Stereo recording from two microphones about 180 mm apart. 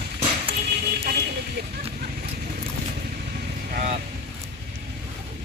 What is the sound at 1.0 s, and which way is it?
Vehicle, 60° right (ahead or behind).